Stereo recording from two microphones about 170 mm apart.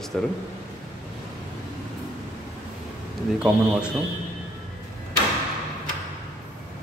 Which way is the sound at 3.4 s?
5° right (ahead or behind).